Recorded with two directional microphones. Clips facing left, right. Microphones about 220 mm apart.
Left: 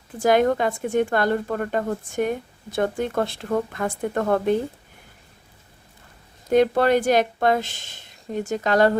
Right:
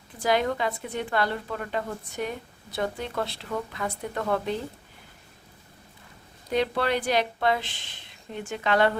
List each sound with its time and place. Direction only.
0.2 s a woman's voice: 50° left (ahead or behind)
6.5 s a woman's voice: 45° left (ahead or behind)